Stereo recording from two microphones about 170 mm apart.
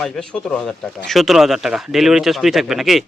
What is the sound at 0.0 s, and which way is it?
Speech, 5° left (ahead or behind).